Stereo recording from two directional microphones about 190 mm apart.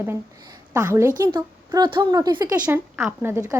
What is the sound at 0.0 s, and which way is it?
A woman's voice, 15° right (ahead or behind).